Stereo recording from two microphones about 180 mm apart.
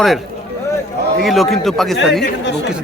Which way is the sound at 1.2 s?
Centre (ahead or behind).